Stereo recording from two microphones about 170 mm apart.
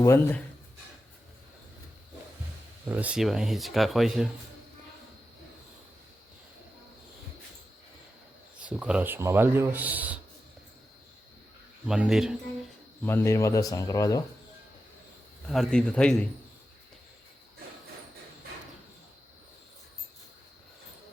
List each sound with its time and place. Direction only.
0.0 s speech: 15° left (ahead or behind)
2.9 s speech: 10° right (ahead or behind)
8.6 s speech: 5° right (ahead or behind)
11.9 s speech: 5° right (ahead or behind)
13.0 s speech: 15° left (ahead or behind)
15.4 s speech: 5° left (ahead or behind)